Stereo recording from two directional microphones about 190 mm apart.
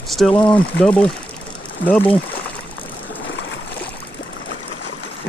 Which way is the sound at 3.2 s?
70° left (ahead or behind).